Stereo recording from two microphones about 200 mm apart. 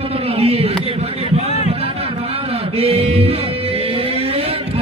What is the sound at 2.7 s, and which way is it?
Music, 30° right (ahead or behind).